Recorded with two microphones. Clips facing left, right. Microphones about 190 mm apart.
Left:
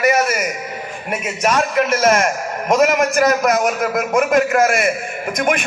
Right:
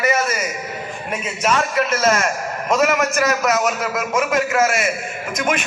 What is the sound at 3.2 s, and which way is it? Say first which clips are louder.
A man's voice: left 3 dB; 50° left (ahead or behind).